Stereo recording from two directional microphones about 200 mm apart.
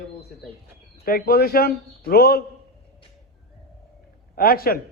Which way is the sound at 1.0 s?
50° left (ahead or behind).